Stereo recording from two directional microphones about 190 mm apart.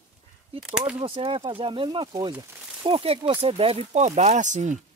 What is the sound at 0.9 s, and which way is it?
Speech, 30° right (ahead or behind).